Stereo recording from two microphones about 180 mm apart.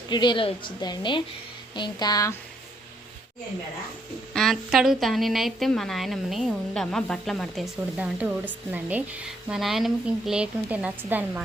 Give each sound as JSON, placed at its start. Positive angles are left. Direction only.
{"t": 0.1, "sound": "a woman's voice", "side_deg": 25}
{"t": 4.4, "sound": "a woman's voice", "side_deg": 0}